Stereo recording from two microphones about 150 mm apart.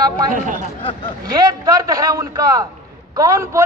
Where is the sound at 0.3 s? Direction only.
60° right (ahead or behind).